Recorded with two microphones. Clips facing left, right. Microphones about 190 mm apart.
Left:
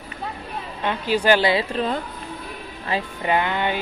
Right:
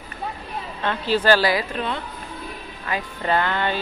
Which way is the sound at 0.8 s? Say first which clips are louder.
Even; 15° left (ahead or behind).